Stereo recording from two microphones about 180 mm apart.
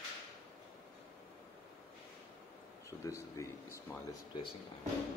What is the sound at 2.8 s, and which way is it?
Speech, 15° left (ahead or behind).